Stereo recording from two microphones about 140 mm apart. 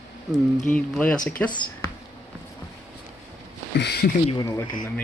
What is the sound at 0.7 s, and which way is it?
Speech, 10° left (ahead or behind).